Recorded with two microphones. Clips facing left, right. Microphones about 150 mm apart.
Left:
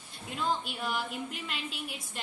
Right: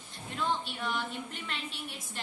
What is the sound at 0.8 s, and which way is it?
A woman's voice, 5° left (ahead or behind).